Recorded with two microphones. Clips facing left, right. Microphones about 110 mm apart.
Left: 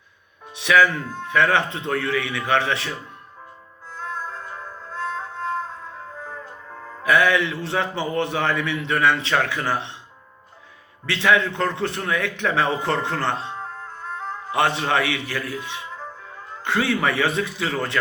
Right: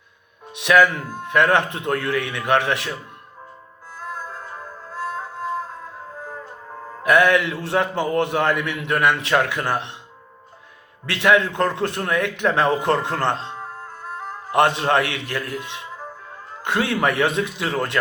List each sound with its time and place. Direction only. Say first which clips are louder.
0.5 s a man's voice: right 2 dB; 15° right (ahead or behind)
3.9 s music: left 1 dB; 10° right (ahead or behind)
6.8 s a man's voice: right 2 dB; 20° right (ahead or behind)
11.1 s a man's voice: right 2 dB; 15° right (ahead or behind)
13.7 s music: even; 10° right (ahead or behind)
16.6 s a man's voice: right 1 dB; 20° right (ahead or behind)